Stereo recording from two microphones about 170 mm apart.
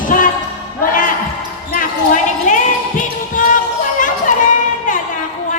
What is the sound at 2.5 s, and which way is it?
Speech, 50° left (ahead or behind).